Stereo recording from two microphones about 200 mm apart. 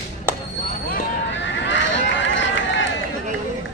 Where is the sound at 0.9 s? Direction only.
65° left (ahead or behind).